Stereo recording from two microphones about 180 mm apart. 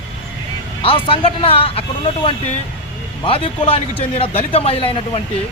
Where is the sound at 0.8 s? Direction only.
30° left (ahead or behind).